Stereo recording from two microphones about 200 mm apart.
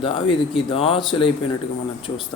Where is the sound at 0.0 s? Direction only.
25° left (ahead or behind).